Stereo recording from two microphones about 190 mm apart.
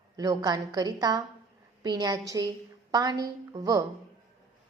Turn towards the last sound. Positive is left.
turn(degrees=-20)  # may be behind; listen again after turning